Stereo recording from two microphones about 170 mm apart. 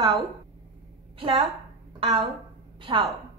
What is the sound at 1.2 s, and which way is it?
Speech, 30° right (ahead or behind).